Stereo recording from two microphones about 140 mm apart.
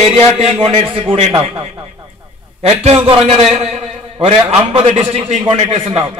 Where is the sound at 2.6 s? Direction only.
50° right (ahead or behind).